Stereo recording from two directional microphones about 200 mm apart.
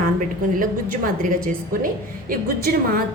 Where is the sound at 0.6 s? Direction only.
45° right (ahead or behind).